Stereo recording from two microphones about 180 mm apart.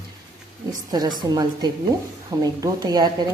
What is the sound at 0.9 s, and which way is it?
Speech, 25° right (ahead or behind).